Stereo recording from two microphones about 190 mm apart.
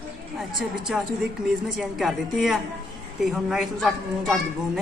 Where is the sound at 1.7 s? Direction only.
Centre (ahead or behind).